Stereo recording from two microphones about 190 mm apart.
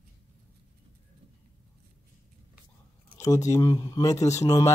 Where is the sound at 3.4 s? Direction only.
15° left (ahead or behind).